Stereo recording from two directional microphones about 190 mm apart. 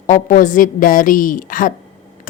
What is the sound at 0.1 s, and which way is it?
A woman's voice, 45° left (ahead or behind).